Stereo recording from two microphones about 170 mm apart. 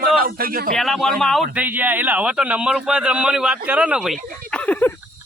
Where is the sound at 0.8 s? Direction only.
Centre (ahead or behind).